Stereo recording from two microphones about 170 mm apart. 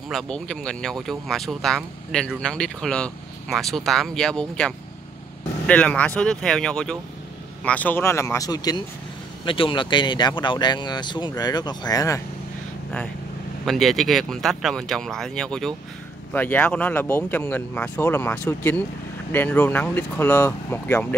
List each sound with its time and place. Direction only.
0.1 s speech: 5° left (ahead or behind); by 12.2 s 20° left (ahead or behind)
13.7 s speech: centre (ahead or behind)